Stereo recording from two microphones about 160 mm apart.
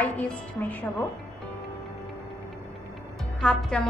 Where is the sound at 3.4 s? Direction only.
5° left (ahead or behind).